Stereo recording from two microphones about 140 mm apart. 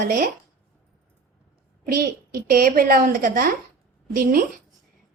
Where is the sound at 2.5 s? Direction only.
90° right.